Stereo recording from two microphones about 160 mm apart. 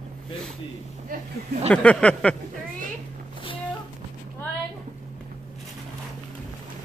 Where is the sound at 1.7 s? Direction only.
5° left (ahead or behind).